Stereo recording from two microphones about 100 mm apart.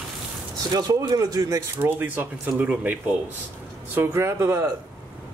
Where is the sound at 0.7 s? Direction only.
35° right (ahead or behind); by 2.9 s 15° right (ahead or behind).